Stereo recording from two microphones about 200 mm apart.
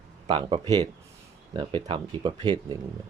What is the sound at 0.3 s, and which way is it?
Speech, 25° right (ahead or behind).